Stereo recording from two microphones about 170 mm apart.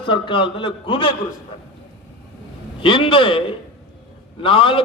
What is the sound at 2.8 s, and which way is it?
A man's voice, 30° left (ahead or behind).